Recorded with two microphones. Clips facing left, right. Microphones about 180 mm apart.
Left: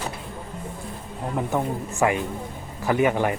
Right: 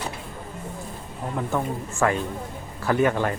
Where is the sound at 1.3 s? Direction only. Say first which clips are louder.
Left 1 dB; 20° left (ahead or behind).